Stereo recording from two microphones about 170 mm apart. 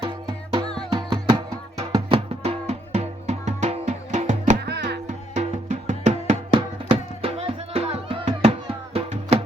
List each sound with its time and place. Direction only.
0.6 s music: 5° left (ahead or behind)
0.9 s music: 25° right (ahead or behind); by 4.5 s 45° right (ahead or behind)
4.6 s music: 75° right (ahead or behind)
5.3 s music: 45° right (ahead or behind)